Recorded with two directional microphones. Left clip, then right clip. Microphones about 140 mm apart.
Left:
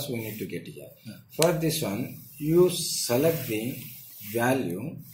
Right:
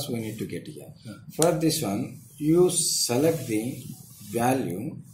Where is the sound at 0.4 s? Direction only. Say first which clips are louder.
Right 1 dB; 15° right (ahead or behind).